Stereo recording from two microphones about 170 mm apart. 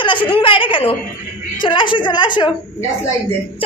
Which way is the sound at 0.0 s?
30° left (ahead or behind).